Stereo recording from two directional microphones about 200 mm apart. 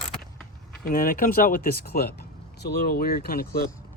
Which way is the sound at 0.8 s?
45° left (ahead or behind).